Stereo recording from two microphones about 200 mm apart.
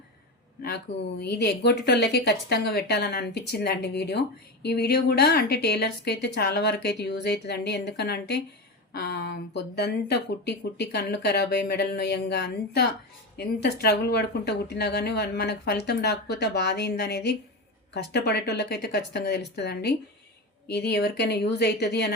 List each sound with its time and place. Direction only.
1.2 s a woman's voice: 55° left (ahead or behind)